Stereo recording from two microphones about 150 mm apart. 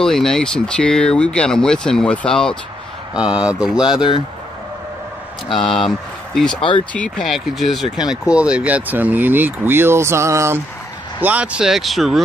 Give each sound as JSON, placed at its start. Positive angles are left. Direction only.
{"t": 0.0, "sound": "speech", "side_deg": 5}
{"t": 3.2, "sound": "speech", "side_deg": -5}
{"t": 5.7, "sound": "speech", "side_deg": 0}